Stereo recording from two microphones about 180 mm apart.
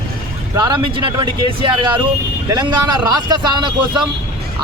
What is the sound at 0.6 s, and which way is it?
Speech, 25° right (ahead or behind).